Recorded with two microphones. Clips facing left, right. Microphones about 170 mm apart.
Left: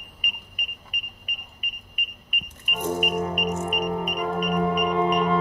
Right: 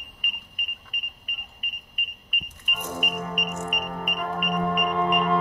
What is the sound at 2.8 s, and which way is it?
Music, 40° left (ahead or behind).